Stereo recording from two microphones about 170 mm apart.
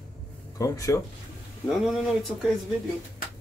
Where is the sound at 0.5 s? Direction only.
20° left (ahead or behind).